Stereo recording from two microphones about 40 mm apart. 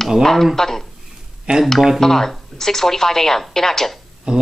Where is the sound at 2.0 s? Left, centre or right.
Centre.